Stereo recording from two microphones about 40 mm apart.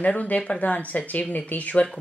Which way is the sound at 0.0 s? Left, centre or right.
Left.